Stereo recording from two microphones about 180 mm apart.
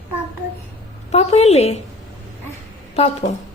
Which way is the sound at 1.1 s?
35° left (ahead or behind).